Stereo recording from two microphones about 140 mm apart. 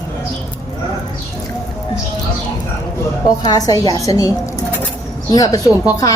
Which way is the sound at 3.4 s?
25° left (ahead or behind).